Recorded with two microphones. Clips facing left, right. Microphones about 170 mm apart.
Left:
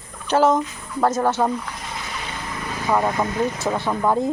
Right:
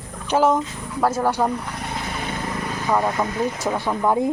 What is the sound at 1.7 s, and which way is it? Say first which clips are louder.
Vehicle: right 4 dB; 60° right (ahead or behind).